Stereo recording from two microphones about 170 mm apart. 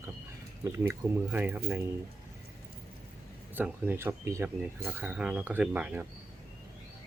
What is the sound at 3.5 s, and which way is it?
Speech, 10° right (ahead or behind).